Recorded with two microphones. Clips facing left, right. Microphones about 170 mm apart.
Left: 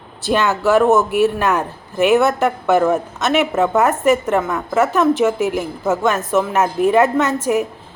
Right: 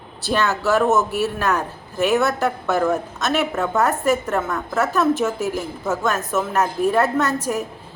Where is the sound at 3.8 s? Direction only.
15° left (ahead or behind).